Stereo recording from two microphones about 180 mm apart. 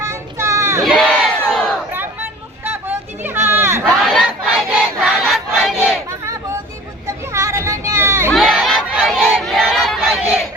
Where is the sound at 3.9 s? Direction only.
Centre (ahead or behind).